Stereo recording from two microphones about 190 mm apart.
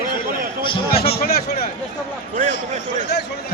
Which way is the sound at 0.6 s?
30° left (ahead or behind).